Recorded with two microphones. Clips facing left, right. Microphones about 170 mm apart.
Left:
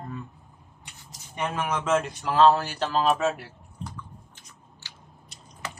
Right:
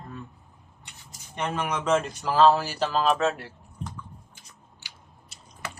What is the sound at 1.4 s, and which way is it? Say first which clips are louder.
Speech: even; 5° left (ahead or behind).